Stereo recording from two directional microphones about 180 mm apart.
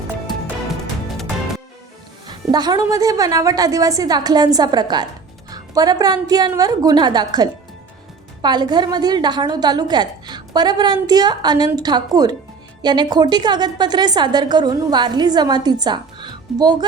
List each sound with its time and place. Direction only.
2.2 s a woman's voice: 25° right (ahead or behind)